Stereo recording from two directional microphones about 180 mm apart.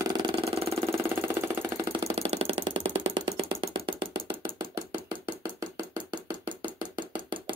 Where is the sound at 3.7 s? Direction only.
30° right (ahead or behind).